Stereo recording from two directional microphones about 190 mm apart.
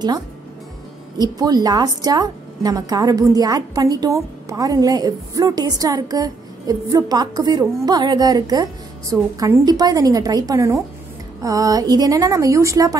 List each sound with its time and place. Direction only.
1.1 s a woman's voice: 20° right (ahead or behind)